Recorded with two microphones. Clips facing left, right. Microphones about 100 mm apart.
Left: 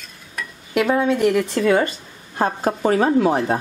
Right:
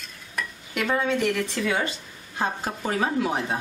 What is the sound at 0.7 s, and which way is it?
Speech, 55° left (ahead or behind).